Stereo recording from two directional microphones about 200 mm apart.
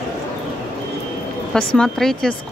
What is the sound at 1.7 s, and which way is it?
Speech, 5° left (ahead or behind).